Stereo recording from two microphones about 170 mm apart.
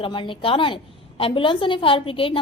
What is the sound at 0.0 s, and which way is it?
A woman's voice, 30° left (ahead or behind).